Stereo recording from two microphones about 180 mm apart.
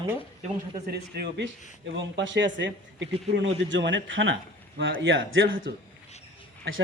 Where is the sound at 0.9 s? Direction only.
65° right (ahead or behind).